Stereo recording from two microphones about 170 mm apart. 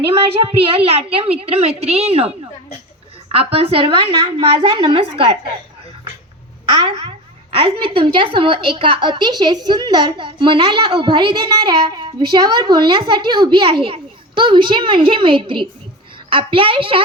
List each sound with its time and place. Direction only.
0.1 s a woman's voice: 35° right (ahead or behind)
3.3 s a woman's voice: 35° right (ahead or behind)
6.8 s a woman's voice: 35° right (ahead or behind)